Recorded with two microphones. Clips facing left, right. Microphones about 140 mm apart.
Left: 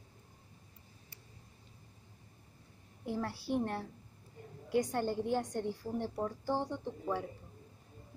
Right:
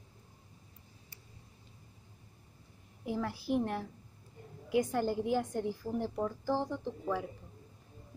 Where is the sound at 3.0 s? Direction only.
5° right (ahead or behind).